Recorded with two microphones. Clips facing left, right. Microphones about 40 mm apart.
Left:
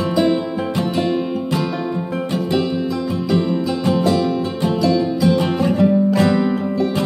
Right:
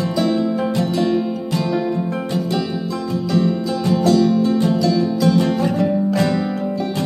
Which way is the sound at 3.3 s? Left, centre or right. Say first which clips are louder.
Even; centre.